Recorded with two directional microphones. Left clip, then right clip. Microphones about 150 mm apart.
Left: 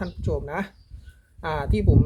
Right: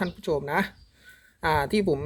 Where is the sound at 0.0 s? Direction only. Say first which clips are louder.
Right 2 dB; 20° right (ahead or behind).